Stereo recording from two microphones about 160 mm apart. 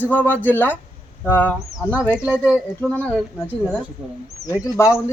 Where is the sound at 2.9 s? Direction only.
15° right (ahead or behind).